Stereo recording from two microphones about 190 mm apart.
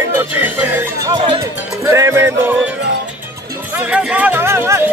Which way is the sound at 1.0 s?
25° right (ahead or behind).